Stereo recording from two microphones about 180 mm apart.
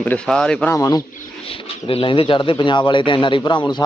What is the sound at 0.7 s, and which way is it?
Speech, 20° left (ahead or behind).